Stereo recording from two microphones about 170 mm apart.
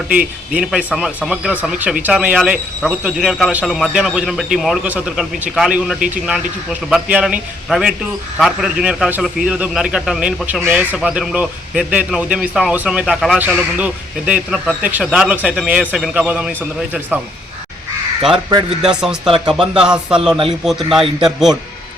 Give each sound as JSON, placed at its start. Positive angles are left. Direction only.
{"t": 0.5, "sound": "a man's voice", "side_deg": -5}
{"t": 18.8, "sound": "speech", "side_deg": -5}